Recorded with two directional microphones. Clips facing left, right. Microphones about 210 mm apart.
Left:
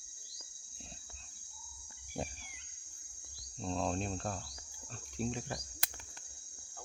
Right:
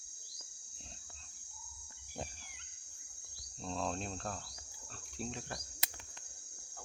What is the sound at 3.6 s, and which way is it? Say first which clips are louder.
Speech: left 3 dB; centre (ahead or behind).